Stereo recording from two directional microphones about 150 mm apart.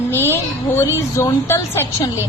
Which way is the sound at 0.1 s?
15° left (ahead or behind).